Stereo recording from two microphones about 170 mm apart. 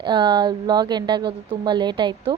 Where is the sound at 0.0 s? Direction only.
25° right (ahead or behind).